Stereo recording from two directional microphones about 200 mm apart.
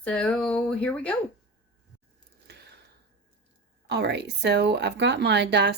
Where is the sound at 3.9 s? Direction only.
55° right (ahead or behind).